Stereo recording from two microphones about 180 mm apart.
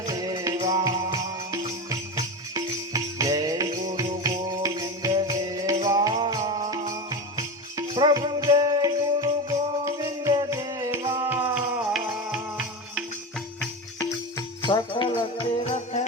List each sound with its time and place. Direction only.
0.1 s music: 20° right (ahead or behind)
14.0 s music: 20° left (ahead or behind)